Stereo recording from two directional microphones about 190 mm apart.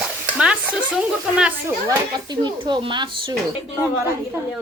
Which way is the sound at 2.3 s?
25° right (ahead or behind).